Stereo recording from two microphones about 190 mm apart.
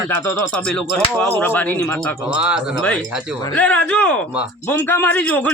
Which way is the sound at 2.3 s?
5° right (ahead or behind).